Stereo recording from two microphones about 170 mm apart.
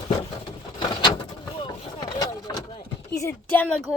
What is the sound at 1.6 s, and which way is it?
Vehicle, 25° left (ahead or behind).